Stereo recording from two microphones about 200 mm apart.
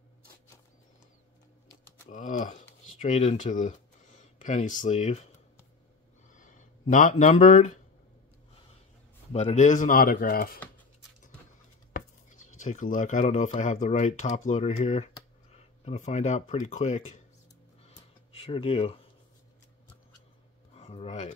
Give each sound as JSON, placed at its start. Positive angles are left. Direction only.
{"t": 2.0, "sound": "speech", "side_deg": 40}
{"t": 6.2, "sound": "a sound", "side_deg": 40}
{"t": 9.3, "sound": "speech", "side_deg": 35}
{"t": 11.9, "sound": "speech", "side_deg": 40}
{"t": 17.8, "sound": "a sound", "side_deg": 30}
{"t": 20.7, "sound": "speech", "side_deg": 30}